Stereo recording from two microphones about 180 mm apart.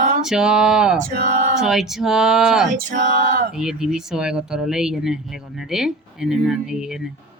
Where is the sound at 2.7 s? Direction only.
45° right (ahead or behind).